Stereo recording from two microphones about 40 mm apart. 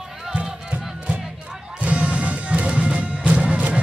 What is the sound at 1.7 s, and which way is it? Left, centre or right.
Music, right.